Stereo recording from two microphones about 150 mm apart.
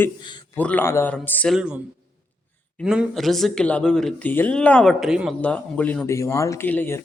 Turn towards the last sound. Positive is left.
turn(degrees=15)  # may be behind; listen again after turning